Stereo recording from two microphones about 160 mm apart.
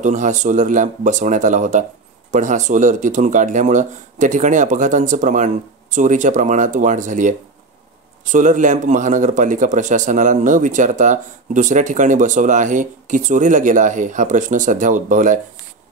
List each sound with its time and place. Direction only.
0.0 s speech: 50° right (ahead or behind)